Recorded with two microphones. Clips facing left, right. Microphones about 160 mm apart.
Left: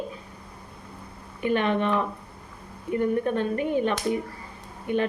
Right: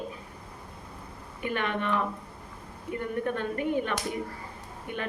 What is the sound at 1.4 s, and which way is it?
Speech, 20° left (ahead or behind).